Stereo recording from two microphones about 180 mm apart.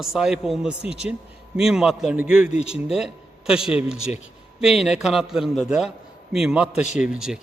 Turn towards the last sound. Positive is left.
turn(degrees=-5)  # may be behind; listen again after turning